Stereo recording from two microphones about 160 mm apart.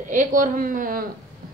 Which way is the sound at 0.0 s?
50° right (ahead or behind).